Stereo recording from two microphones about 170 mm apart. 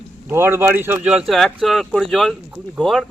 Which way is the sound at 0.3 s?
15° right (ahead or behind).